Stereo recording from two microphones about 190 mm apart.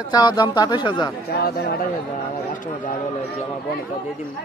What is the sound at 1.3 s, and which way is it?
Speech, 55° left (ahead or behind).